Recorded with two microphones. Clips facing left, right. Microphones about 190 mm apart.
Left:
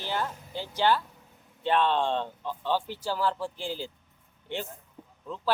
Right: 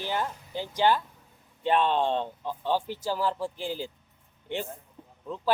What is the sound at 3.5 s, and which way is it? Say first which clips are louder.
Speech: right 2 dB; 45° right (ahead or behind).